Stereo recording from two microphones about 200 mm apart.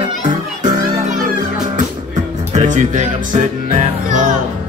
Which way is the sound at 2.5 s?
40° right (ahead or behind).